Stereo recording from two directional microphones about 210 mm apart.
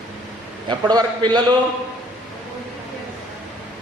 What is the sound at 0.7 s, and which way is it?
Speech, 20° right (ahead or behind).